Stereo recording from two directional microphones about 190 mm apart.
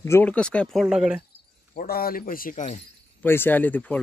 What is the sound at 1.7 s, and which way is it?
Speech, 50° left (ahead or behind).